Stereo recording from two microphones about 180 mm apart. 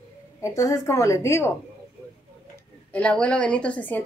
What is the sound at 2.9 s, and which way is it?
A woman's voice, 5° left (ahead or behind).